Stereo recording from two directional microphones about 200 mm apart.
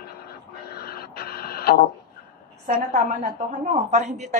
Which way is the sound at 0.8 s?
50° left (ahead or behind).